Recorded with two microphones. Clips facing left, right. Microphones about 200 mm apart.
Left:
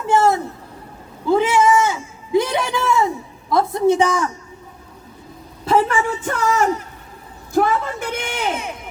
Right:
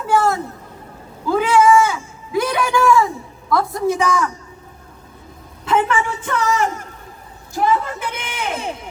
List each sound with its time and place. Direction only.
0.1 s a sound: 20° left (ahead or behind)
3.5 s a woman's voice: 25° left (ahead or behind)
5.6 s a woman's voice: 35° left (ahead or behind)